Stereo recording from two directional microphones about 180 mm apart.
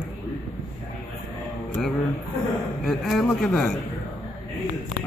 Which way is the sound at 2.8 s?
Centre (ahead or behind).